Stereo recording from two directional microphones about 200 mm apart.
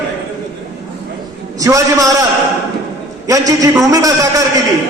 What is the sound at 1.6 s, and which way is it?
Speech, 15° right (ahead or behind).